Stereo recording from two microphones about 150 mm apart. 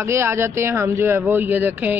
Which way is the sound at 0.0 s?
15° right (ahead or behind).